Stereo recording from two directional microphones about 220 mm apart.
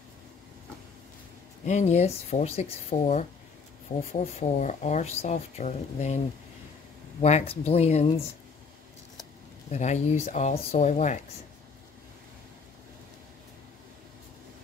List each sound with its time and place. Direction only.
1.7 s speech: 30° left (ahead or behind)
7.2 s speech: 30° left (ahead or behind)
9.7 s speech: 30° left (ahead or behind)